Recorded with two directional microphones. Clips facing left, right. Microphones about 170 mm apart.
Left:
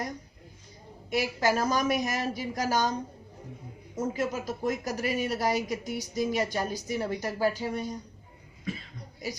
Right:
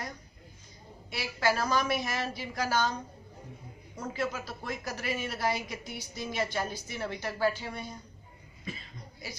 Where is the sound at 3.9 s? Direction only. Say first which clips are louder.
Left 4 dB; 45° left (ahead or behind).